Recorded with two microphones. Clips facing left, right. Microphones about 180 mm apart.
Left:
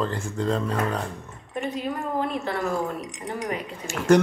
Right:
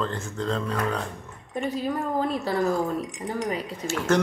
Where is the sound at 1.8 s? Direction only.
35° right (ahead or behind).